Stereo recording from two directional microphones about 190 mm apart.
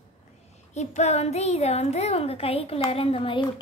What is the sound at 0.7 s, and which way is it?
A woman's voice, 35° left (ahead or behind).